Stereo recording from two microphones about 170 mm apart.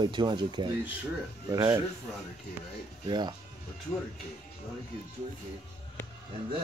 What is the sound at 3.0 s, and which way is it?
Speech, 25° right (ahead or behind).